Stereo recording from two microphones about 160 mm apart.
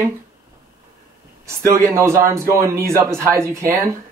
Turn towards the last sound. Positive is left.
turn(degrees=-15)  # may be behind; listen again after turning